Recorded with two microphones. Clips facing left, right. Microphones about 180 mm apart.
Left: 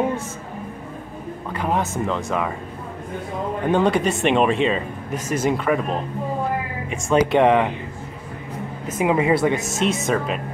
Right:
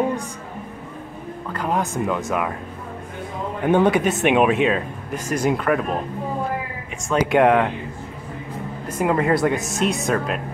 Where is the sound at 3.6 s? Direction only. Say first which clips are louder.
Right 2 dB; 5° right (ahead or behind).